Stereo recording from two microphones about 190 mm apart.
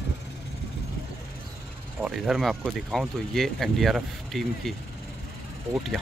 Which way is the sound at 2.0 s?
Centre (ahead or behind).